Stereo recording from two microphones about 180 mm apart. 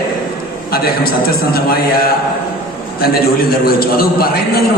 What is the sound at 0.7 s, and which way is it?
A man's voice, 55° left (ahead or behind).